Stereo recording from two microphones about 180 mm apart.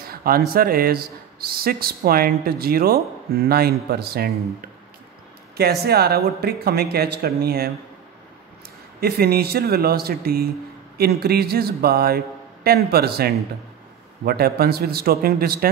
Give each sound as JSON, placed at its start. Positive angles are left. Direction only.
{"t": 0.1, "sound": "a sound", "side_deg": -55}
{"t": 0.5, "sound": "speech", "side_deg": -55}
{"t": 5.6, "sound": "speech", "side_deg": -60}
{"t": 9.0, "sound": "speech", "side_deg": -60}